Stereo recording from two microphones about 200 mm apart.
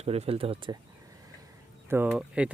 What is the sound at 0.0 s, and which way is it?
Speech, 30° right (ahead or behind).